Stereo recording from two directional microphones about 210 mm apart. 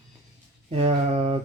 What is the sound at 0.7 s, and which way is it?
Speech, 30° right (ahead or behind).